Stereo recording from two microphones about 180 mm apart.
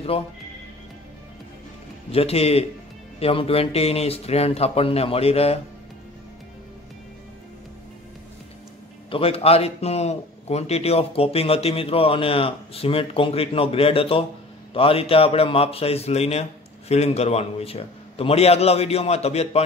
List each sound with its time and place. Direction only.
0.1 s a man's voice: 35° left (ahead or behind)
2.0 s a man's voice: 35° left (ahead or behind)
9.1 s a man's voice: 35° left (ahead or behind)